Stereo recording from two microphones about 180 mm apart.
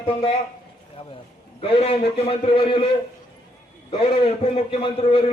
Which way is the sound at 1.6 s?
35° left (ahead or behind).